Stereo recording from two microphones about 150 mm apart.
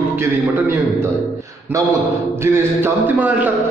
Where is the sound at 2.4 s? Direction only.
15° right (ahead or behind).